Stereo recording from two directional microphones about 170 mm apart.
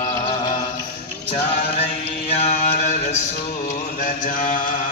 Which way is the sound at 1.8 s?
35° left (ahead or behind).